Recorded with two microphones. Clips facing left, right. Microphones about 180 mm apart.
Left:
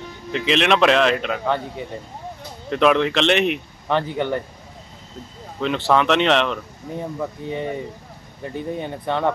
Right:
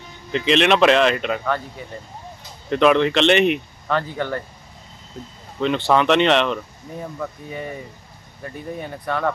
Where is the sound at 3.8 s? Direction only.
20° left (ahead or behind).